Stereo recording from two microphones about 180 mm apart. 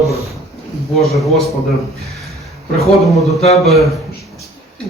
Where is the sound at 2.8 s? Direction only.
Centre (ahead or behind).